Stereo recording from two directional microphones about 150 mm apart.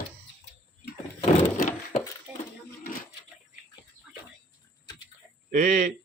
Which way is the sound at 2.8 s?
65° left (ahead or behind).